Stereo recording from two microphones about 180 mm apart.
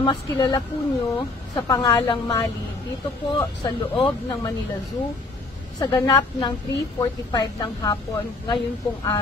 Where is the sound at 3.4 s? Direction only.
20° left (ahead or behind).